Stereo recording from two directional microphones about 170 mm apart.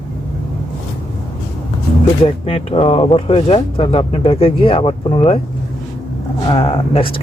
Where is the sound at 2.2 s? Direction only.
35° left (ahead or behind).